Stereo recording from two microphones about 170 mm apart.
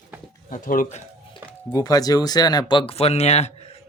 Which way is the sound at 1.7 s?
20° left (ahead or behind).